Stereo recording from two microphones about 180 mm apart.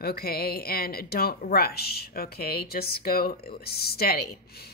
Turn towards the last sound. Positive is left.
turn(degrees=60)  # may be behind; listen again after turning